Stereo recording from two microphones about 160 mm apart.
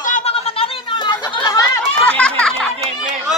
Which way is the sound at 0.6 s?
30° left (ahead or behind).